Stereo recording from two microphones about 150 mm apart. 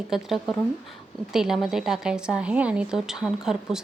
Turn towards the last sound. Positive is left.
turn(degrees=-5)  # may be behind; listen again after turning